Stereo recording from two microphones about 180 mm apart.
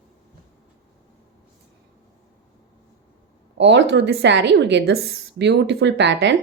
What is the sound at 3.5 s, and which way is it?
A woman's voice, 80° right.